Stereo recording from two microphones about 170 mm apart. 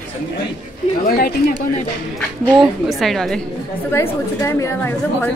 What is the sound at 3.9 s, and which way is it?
A woman's voice, 15° left (ahead or behind).